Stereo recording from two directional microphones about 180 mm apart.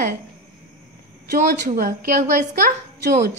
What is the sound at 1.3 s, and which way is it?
A woman's voice, 50° right (ahead or behind).